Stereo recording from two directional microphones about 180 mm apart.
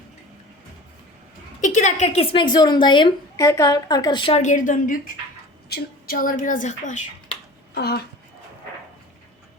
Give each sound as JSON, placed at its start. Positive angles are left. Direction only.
{"t": 1.6, "sound": "a woman's voice", "side_deg": 40}
{"t": 5.6, "sound": "speech", "side_deg": 60}
{"t": 7.7, "sound": "speech", "side_deg": 60}